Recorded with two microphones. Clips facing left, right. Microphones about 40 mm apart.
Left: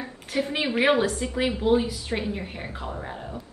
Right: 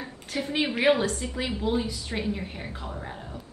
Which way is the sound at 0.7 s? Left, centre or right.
Left.